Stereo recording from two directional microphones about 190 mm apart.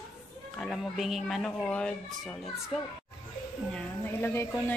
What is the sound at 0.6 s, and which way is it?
A woman's voice, centre (ahead or behind).